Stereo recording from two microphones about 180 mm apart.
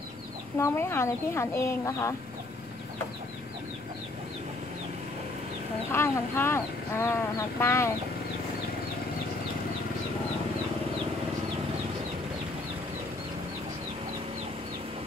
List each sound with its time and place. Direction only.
0.6 s speech: 15° left (ahead or behind)
5.9 s speech: 15° left (ahead or behind)